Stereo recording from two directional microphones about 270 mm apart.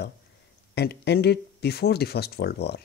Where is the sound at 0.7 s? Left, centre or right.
Left.